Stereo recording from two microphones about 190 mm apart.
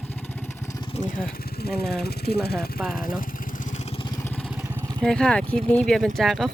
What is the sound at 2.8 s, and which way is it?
Speech, 5° right (ahead or behind).